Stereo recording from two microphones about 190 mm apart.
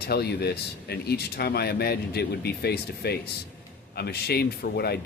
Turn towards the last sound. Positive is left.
turn(degrees=55)  # may be behind; listen again after turning